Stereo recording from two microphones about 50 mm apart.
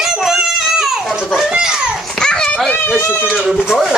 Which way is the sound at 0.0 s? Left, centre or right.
Centre.